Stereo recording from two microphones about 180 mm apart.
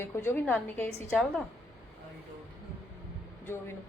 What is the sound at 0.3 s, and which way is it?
Speech, 10° left (ahead or behind).